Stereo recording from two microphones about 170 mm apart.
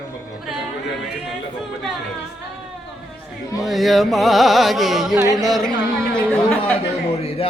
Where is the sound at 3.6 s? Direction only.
Centre (ahead or behind).